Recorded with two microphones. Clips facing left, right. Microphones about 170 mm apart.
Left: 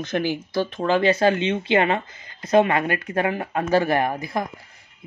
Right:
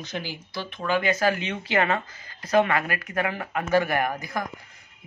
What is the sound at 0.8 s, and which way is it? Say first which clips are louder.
Speech: left 4 dB; 30° left (ahead or behind).